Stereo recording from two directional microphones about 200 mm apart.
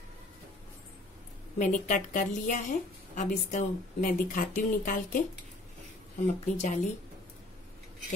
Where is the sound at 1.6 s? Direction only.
40° left (ahead or behind).